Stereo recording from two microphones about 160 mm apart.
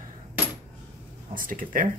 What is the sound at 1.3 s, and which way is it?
Speech, 60° right (ahead or behind).